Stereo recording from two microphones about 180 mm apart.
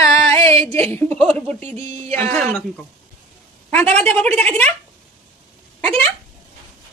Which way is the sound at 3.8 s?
10° left (ahead or behind).